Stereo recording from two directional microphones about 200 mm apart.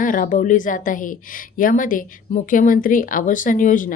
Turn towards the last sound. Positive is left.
turn(degrees=40)  # may be behind; listen again after turning